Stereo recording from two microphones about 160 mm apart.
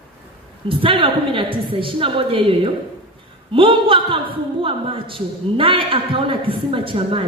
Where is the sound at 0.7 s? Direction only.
35° right (ahead or behind).